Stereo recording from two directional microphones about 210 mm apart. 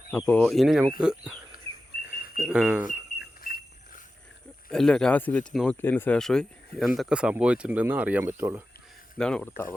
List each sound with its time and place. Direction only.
0.1 s speech: 5° left (ahead or behind)
2.4 s speech: 5° right (ahead or behind)
3.2 s a sound: 45° left (ahead or behind)
4.7 s speech: 5° left (ahead or behind)
9.1 s speech: 5° left (ahead or behind)